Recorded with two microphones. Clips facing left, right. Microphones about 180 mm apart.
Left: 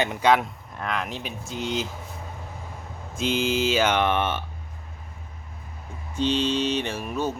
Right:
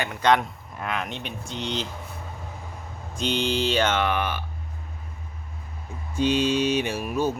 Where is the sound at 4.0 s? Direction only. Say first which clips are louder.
Left 2 dB; 25° left (ahead or behind).